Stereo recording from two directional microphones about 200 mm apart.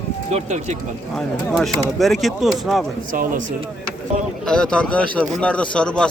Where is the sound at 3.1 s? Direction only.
45° right (ahead or behind).